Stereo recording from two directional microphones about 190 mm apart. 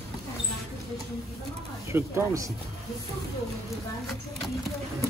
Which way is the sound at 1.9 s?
15° right (ahead or behind).